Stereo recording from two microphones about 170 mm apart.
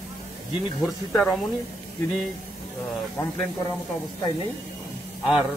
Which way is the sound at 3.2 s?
15° left (ahead or behind).